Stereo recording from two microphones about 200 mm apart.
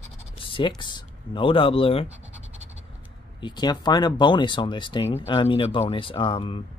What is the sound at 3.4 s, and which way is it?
Speech, 20° left (ahead or behind).